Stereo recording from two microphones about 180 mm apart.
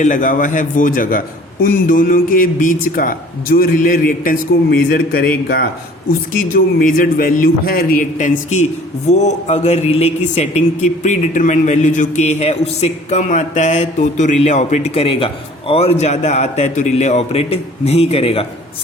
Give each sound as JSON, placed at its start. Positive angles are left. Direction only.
{"t": 0.0, "sound": "a man's voice", "side_deg": 45}